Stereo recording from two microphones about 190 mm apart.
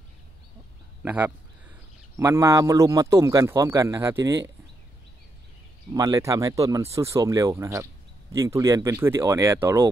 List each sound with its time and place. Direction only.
1.0 s a man's voice: 10° right (ahead or behind)
5.9 s speech: 15° right (ahead or behind)